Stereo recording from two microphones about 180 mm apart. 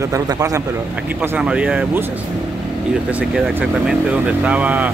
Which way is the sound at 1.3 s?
5° right (ahead or behind).